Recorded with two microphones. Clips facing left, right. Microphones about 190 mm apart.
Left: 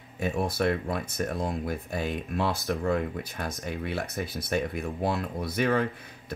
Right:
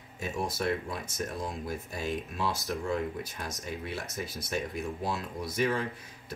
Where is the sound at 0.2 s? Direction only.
60° left (ahead or behind).